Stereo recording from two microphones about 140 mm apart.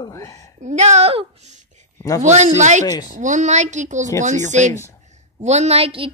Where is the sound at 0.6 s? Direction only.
55° right (ahead or behind).